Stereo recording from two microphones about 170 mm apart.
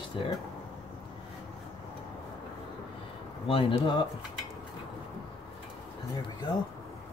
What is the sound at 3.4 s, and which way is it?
Speech, 30° left (ahead or behind).